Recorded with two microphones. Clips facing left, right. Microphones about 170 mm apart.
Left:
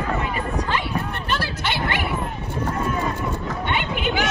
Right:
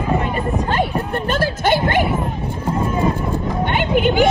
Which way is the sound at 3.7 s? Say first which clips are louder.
Right 9 dB; 45° right (ahead or behind).